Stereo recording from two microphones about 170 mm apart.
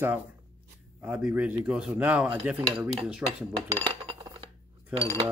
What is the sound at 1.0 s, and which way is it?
A man's voice, 5° right (ahead or behind).